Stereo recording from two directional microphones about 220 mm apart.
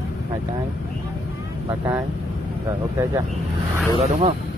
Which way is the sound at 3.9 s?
25° right (ahead or behind).